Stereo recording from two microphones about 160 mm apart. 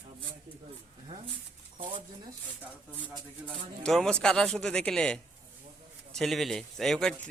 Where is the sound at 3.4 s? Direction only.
5° left (ahead or behind).